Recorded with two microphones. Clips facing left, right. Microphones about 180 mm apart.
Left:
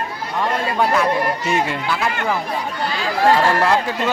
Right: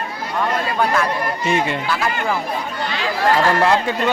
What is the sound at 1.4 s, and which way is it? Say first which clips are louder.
Speech: right 1 dB; centre (ahead or behind).